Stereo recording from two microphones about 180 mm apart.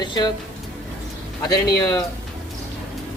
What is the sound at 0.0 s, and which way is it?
Speech, 25° left (ahead or behind).